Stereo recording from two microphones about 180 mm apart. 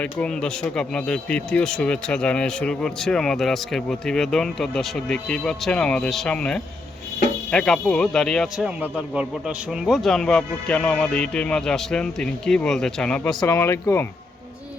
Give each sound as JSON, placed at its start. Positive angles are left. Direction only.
{"t": 0.0, "sound": "speech", "side_deg": 5}